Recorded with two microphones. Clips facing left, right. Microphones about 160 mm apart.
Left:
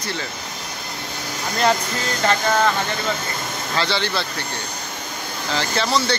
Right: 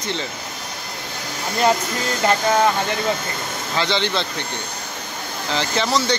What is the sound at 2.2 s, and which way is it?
Speech, 15° right (ahead or behind).